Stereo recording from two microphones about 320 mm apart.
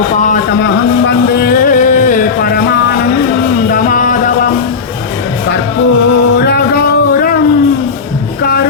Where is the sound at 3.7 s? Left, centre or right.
Left.